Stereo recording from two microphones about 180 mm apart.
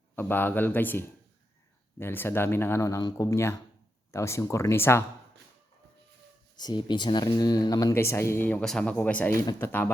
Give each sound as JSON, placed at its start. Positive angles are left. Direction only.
{"t": 0.2, "sound": "speech", "side_deg": 10}
{"t": 6.6, "sound": "speech", "side_deg": 25}